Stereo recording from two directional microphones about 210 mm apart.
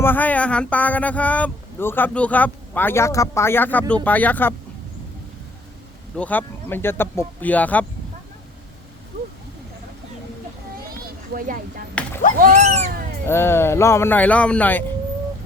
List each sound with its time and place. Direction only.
0.0 s speech: 10° left (ahead or behind)
6.1 s speech: 10° left (ahead or behind)
10.8 s a sound: 45° right (ahead or behind)
12.0 s a sound: 5° left (ahead or behind)
12.4 s speech: 35° right (ahead or behind)
13.2 s speech: 10° left (ahead or behind)